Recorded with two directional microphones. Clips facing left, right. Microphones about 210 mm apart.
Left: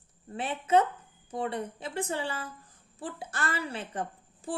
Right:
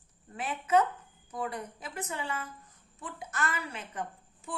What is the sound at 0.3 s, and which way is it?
A woman's voice, 30° left (ahead or behind).